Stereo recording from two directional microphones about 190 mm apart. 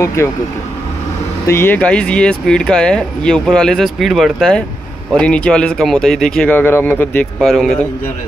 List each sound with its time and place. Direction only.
0.0 s speech: 15° left (ahead or behind)
1.5 s speech: 10° left (ahead or behind)
7.3 s speech: centre (ahead or behind)